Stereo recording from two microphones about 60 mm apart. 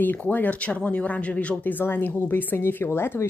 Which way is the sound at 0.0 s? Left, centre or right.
Left.